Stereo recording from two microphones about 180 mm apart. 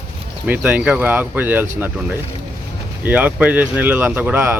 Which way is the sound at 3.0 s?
10° right (ahead or behind).